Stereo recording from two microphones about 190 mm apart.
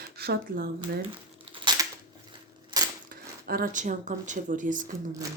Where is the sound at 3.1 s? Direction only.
50° right (ahead or behind).